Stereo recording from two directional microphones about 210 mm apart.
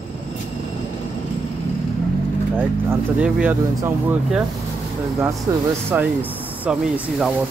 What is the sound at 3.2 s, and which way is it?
Speech, 5° right (ahead or behind).